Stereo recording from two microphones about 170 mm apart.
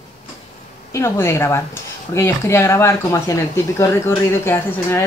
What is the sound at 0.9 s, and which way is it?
Speech, 15° left (ahead or behind).